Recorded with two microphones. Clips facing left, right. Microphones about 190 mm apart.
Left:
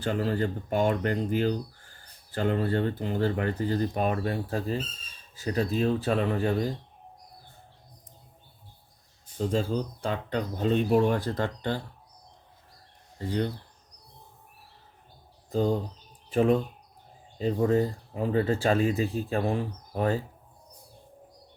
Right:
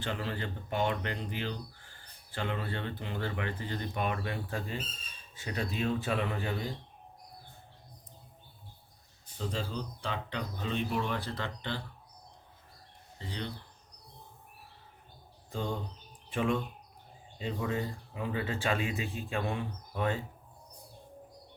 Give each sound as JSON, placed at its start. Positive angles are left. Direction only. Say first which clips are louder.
{"t": 0.0, "sound": "speech", "louder": "left 9 dB", "side_deg": 40}
{"t": 9.4, "sound": "speech", "louder": "left 9 dB", "side_deg": 45}
{"t": 13.1, "sound": "speech", "louder": "left 11 dB", "side_deg": 45}
{"t": 15.4, "sound": "speech", "louder": "left 10 dB", "side_deg": 40}